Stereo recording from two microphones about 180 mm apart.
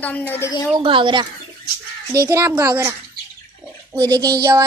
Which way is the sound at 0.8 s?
25° right (ahead or behind).